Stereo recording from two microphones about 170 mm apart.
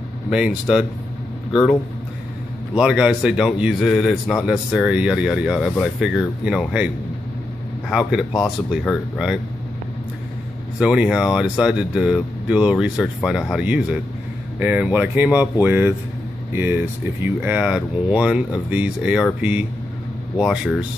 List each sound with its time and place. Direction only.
0.3 s speech: 5° right (ahead or behind)
2.7 s speech: 5° right (ahead or behind)
7.9 s speech: 5° right (ahead or behind)
10.8 s speech: 5° right (ahead or behind)
20.3 s speech: 5° right (ahead or behind)